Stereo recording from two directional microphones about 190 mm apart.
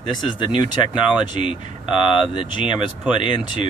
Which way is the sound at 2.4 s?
25° left (ahead or behind).